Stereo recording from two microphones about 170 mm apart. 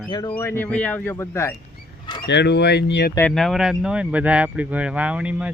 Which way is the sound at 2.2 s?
85° left.